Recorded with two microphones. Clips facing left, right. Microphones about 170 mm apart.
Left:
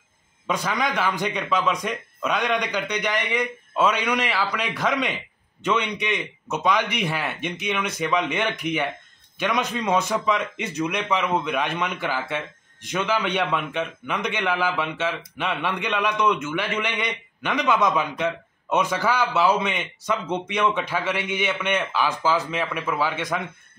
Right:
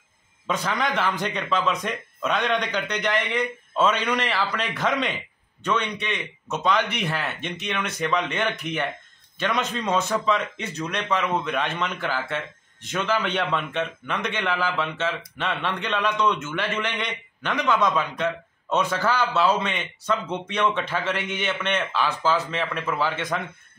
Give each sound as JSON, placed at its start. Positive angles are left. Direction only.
{"t": 0.5, "sound": "a man's voice", "side_deg": 10}